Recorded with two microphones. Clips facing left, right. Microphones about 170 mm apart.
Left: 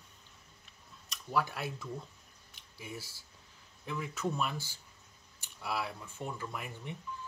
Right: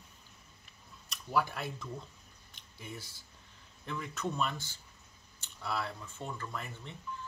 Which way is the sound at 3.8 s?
5° left (ahead or behind).